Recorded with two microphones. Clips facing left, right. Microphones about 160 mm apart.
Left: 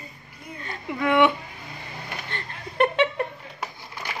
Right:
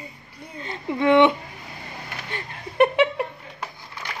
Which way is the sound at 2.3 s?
10° right (ahead or behind).